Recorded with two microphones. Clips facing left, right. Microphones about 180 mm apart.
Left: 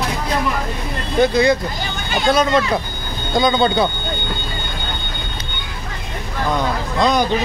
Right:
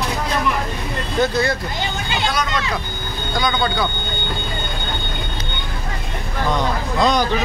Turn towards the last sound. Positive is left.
turn(degrees=0)  # may be behind; listen again after turning